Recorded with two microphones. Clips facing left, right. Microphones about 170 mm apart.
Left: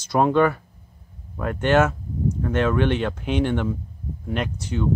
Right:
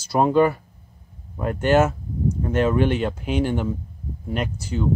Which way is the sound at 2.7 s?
10° right (ahead or behind).